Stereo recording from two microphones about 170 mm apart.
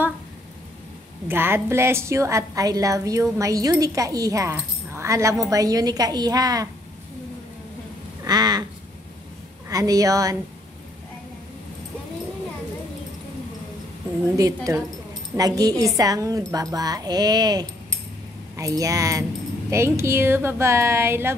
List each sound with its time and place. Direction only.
1.2 s a woman's voice: 15° right (ahead or behind)
8.2 s a sound: 25° right (ahead or behind)
9.7 s a woman's voice: 20° right (ahead or behind)
14.3 s a woman's voice: 20° right (ahead or behind)